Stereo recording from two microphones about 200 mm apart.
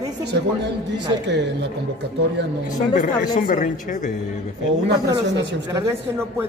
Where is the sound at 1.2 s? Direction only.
60° right (ahead or behind).